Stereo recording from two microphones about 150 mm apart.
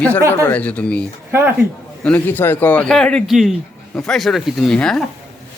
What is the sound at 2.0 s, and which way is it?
A man's voice, 10° left (ahead or behind).